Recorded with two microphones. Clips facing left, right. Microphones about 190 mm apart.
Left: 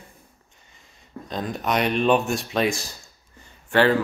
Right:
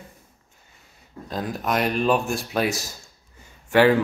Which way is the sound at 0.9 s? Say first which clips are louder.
Even; 5° right (ahead or behind).